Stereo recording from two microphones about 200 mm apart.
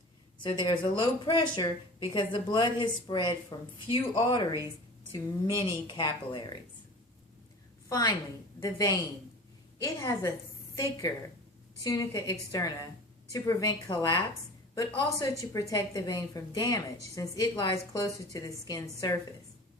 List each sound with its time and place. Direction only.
0.4 s speech: 25° left (ahead or behind)
5.5 s speech: 20° left (ahead or behind)
7.9 s a woman's voice: 15° left (ahead or behind)